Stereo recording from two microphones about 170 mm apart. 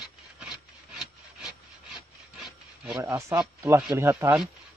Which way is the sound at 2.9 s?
15° right (ahead or behind).